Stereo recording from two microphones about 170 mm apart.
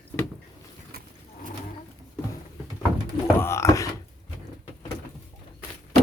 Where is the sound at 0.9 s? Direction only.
65° right (ahead or behind).